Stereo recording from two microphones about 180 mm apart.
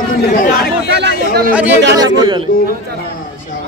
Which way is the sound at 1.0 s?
60° right (ahead or behind).